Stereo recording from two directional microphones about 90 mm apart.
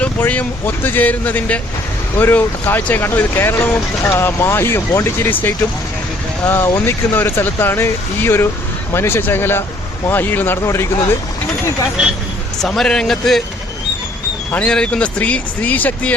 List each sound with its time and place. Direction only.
0.2 s speech: 20° left (ahead or behind)
12.6 s a man's voice: 5° left (ahead or behind)
14.7 s speech: 10° left (ahead or behind)